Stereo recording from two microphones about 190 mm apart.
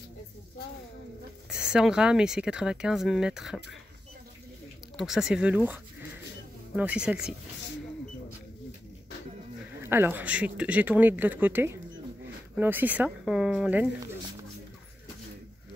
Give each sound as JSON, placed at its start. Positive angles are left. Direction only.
{"t": 1.7, "sound": "speech", "side_deg": -5}
{"t": 4.9, "sound": "speech", "side_deg": 0}
{"t": 9.8, "sound": "speech", "side_deg": -10}